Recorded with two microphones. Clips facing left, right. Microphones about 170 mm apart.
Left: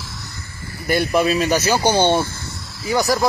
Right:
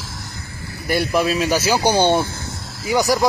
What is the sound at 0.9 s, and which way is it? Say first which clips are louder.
Speech: left 1 dB; centre (ahead or behind).